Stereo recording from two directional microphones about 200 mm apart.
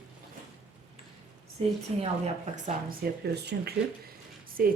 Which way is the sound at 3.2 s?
55° right (ahead or behind).